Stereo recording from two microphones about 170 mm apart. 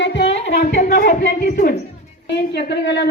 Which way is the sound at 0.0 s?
90° left.